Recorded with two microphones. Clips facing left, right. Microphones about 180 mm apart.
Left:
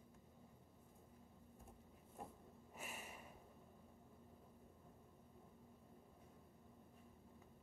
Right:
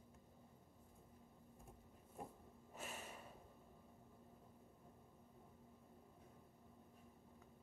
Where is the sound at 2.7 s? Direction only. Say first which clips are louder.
Right 2 dB; 10° left (ahead or behind).